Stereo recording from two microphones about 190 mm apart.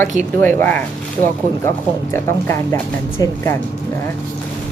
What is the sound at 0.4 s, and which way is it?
Speech, 10° left (ahead or behind).